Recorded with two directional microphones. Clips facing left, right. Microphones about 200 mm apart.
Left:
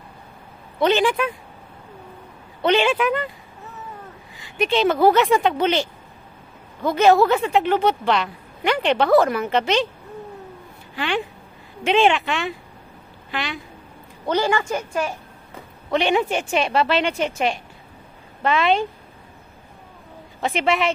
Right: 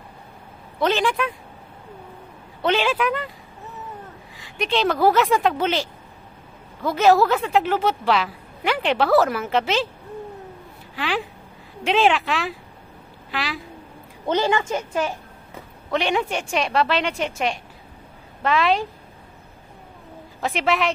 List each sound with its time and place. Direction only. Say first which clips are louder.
0.7 s a woman's voice: left 3 dB; centre (ahead or behind)
2.6 s a woman's voice: left 3 dB; centre (ahead or behind)
4.4 s a woman's voice: left 3 dB; centre (ahead or behind)
11.0 s a woman's voice: left 2 dB; centre (ahead or behind)
14.2 s a woman's voice: even; 20° right (ahead or behind)
15.9 s a woman's voice: left 3 dB; centre (ahead or behind)
20.4 s a woman's voice: left 1 dB; centre (ahead or behind)